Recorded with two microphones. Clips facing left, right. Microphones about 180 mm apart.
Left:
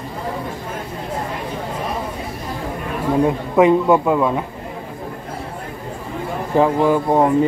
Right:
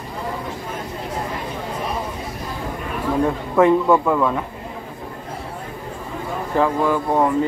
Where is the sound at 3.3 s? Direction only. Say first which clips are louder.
Left 1 dB; 15° left (ahead or behind).